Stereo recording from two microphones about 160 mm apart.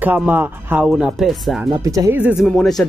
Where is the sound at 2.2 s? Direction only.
10° right (ahead or behind).